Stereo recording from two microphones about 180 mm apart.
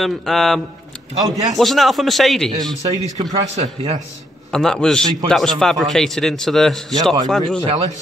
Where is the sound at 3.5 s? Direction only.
40° right (ahead or behind).